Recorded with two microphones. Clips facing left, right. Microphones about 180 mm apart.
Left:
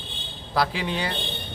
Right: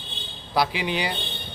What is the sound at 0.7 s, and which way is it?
Speech, 85° right.